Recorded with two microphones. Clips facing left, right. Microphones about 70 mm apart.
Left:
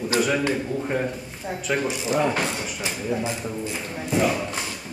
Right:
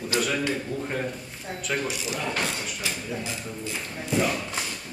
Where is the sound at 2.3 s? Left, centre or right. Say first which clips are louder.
Left 4 dB; centre.